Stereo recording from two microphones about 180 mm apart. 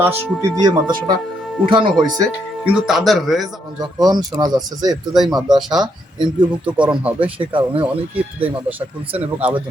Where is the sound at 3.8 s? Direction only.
20° right (ahead or behind).